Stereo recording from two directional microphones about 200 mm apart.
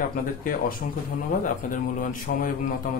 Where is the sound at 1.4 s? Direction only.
40° left (ahead or behind).